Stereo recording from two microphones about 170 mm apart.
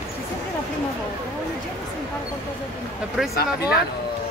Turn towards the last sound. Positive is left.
turn(degrees=65)  # may be behind; listen again after turning